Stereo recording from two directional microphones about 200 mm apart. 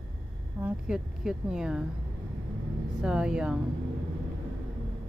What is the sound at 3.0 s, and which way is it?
Speech, 5° right (ahead or behind).